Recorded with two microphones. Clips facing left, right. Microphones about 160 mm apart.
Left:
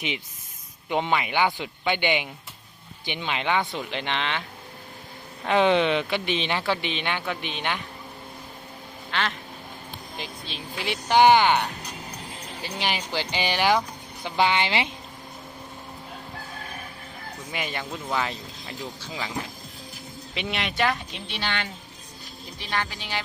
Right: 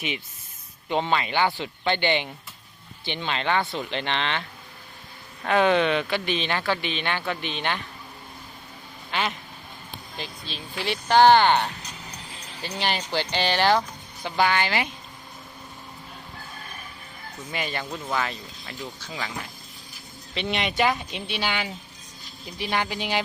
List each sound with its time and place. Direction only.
0.9 s a man's voice: 15° left (ahead or behind)
5.5 s a man's voice: 20° left (ahead or behind)
10.2 s a man's voice: 15° left (ahead or behind)
12.6 s a man's voice: 10° left (ahead or behind)
17.5 s a man's voice: 15° left (ahead or behind)
20.3 s speech: 5° left (ahead or behind); by 23.2 s 15° right (ahead or behind)